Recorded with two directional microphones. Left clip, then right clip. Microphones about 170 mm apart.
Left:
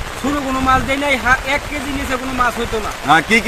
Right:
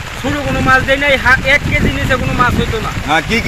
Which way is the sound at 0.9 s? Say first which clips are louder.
Right 5 dB; 30° left (ahead or behind).